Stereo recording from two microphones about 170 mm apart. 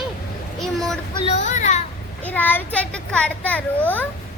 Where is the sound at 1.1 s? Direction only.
40° left (ahead or behind).